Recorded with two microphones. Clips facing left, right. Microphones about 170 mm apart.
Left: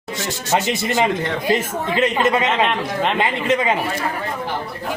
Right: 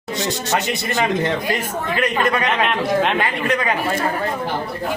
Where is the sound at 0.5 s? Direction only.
20° left (ahead or behind).